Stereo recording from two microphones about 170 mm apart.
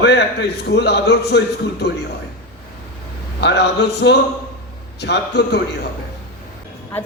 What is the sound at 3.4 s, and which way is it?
A man's voice, 85° left.